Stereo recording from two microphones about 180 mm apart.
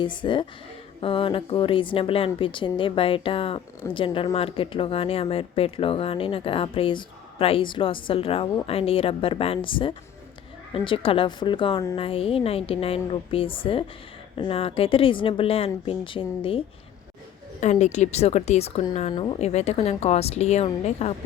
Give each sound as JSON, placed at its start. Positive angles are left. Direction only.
{"t": 0.0, "sound": "speech", "side_deg": 25}